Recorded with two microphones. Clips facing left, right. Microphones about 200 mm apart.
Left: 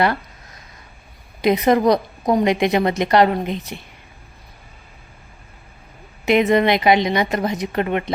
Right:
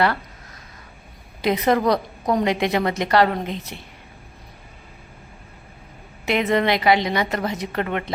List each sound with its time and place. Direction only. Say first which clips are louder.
1.4 s a woman's voice: left 4 dB; 15° left (ahead or behind)
6.2 s a woman's voice: left 4 dB; 15° left (ahead or behind)